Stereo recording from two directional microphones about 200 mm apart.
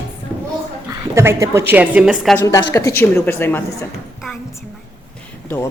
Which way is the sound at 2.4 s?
15° left (ahead or behind).